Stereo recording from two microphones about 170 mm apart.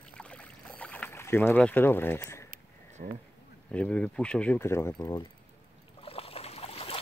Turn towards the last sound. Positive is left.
turn(degrees=35)  # may be behind; listen again after turning